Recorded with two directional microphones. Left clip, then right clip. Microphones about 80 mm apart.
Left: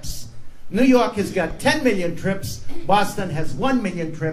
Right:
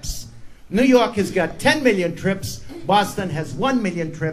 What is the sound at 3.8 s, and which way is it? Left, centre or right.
Speech, right.